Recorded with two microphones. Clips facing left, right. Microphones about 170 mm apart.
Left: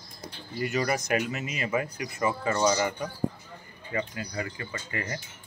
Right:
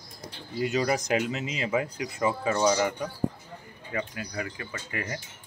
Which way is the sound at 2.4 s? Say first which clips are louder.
Right 1 dB; 5° right (ahead or behind).